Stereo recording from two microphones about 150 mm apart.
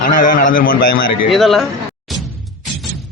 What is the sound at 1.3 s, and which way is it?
Speech, centre (ahead or behind).